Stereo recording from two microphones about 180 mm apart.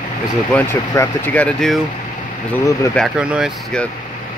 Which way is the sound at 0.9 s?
10° left (ahead or behind).